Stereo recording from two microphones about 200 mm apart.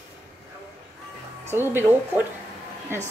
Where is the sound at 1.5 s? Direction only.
10° right (ahead or behind).